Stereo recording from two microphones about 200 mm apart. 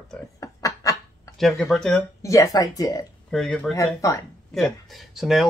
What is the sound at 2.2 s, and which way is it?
Speech, 15° left (ahead or behind).